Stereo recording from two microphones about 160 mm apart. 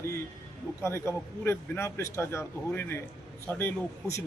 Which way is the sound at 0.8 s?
15° left (ahead or behind).